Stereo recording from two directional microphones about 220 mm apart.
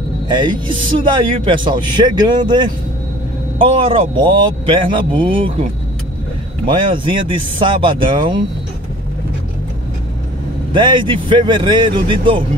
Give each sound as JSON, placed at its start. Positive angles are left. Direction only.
{"t": 0.3, "sound": "a man's voice", "side_deg": -20}
{"t": 10.7, "sound": "a man's voice", "side_deg": -20}